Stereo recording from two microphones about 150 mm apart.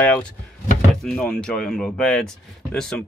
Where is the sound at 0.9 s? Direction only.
Centre (ahead or behind).